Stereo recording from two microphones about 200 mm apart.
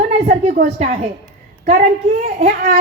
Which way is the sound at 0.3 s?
35° right (ahead or behind).